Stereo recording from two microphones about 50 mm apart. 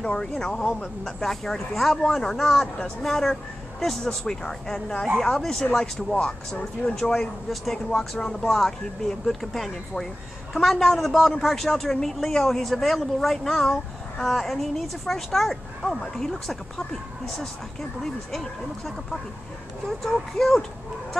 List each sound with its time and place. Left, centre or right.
0.0 s speech: centre
6.1 s speech: left
6.9 s speech: centre
18.0 s speech: centre